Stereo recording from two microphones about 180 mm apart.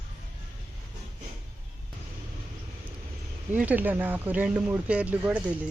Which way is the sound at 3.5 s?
10° right (ahead or behind).